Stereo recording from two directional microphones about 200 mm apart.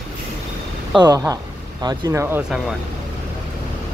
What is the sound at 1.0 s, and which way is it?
Speech, 15° right (ahead or behind).